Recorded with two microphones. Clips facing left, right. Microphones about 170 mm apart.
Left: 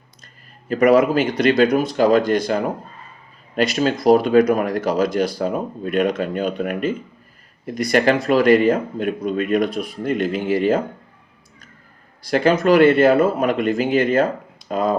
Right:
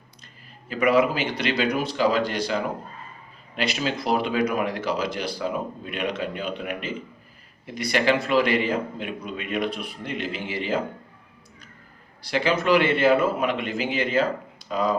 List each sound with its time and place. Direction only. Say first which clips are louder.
0.7 s speech: left 6 dB; 45° left (ahead or behind)
12.2 s speech: left 7 dB; 45° left (ahead or behind)